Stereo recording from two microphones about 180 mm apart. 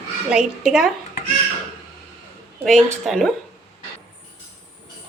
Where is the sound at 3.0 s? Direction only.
Centre (ahead or behind).